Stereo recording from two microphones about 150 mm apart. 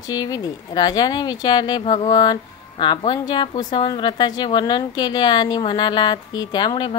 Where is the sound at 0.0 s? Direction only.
25° left (ahead or behind).